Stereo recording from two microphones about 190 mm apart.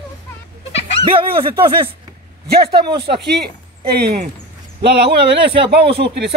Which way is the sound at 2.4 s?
60° right (ahead or behind).